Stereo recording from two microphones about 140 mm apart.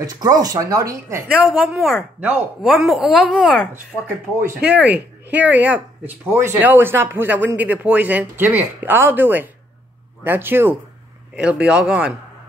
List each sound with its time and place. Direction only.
0.0 s speech: 25° right (ahead or behind)
1.4 s speech: centre (ahead or behind)
4.4 s speech: 10° right (ahead or behind)